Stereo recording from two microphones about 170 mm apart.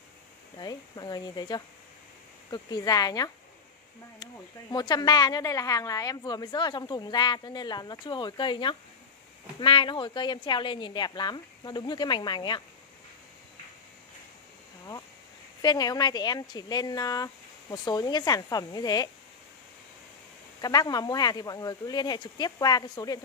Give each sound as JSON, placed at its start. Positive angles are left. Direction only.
{"t": 0.6, "sound": "speech", "side_deg": 25}
{"t": 15.6, "sound": "speech", "side_deg": 25}
{"t": 20.6, "sound": "speech", "side_deg": 20}